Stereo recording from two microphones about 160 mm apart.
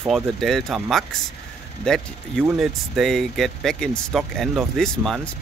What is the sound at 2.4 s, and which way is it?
Speech, 5° right (ahead or behind).